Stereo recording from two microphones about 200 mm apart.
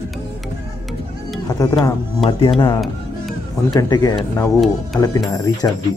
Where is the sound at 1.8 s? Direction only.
25° left (ahead or behind).